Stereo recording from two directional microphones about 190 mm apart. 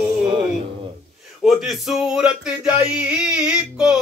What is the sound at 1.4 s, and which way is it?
Speech, centre (ahead or behind).